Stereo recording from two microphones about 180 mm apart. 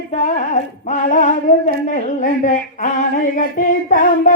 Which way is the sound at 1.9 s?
45° left (ahead or behind).